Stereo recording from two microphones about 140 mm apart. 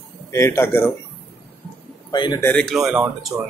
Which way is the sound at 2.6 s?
Centre (ahead or behind).